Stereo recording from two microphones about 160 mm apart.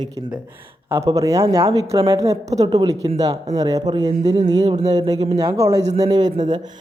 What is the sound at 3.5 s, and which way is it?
Speech, 25° right (ahead or behind).